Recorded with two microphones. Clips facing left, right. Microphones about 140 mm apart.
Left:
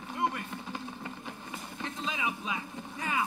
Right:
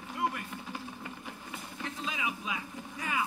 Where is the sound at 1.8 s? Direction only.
25° left (ahead or behind).